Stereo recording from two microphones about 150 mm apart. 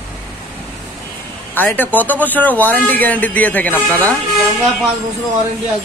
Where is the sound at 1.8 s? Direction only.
10° left (ahead or behind).